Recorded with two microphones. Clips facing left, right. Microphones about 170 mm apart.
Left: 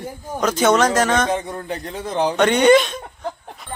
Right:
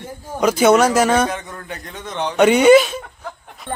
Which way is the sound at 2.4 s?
10° right (ahead or behind).